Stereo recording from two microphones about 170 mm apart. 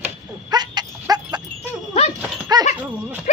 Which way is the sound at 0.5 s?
25° right (ahead or behind).